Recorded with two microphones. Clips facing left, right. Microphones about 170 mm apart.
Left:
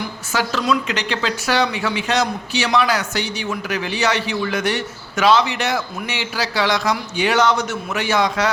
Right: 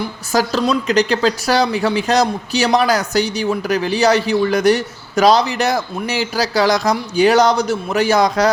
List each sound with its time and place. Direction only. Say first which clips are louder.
0.3 s speech: right 4 dB; 35° right (ahead or behind)